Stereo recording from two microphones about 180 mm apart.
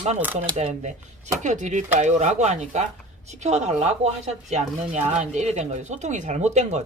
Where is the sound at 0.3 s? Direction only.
40° right (ahead or behind).